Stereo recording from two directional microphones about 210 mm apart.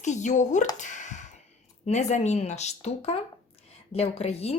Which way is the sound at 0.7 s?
35° left (ahead or behind).